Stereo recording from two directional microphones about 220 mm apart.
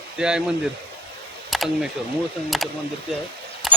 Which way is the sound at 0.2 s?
5° right (ahead or behind).